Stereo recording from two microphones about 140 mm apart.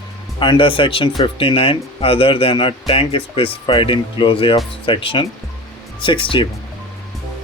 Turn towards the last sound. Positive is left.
turn(degrees=35)  # may be behind; listen again after turning